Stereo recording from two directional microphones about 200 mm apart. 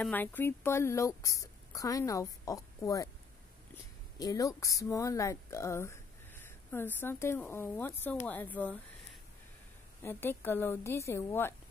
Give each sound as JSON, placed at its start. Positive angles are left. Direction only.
{"t": 0.0, "sound": "a woman's voice", "side_deg": 10}
{"t": 4.2, "sound": "a woman's voice", "side_deg": 15}
{"t": 10.0, "sound": "a woman's voice", "side_deg": 10}